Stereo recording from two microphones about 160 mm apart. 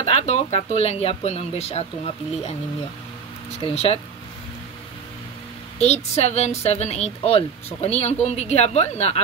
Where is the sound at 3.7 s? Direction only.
40° left (ahead or behind).